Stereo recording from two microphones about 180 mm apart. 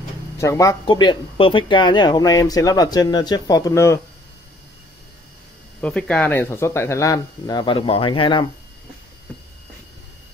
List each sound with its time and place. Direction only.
0.4 s speech: 15° left (ahead or behind)
5.8 s speech: 5° left (ahead or behind); by 8.5 s 25° left (ahead or behind)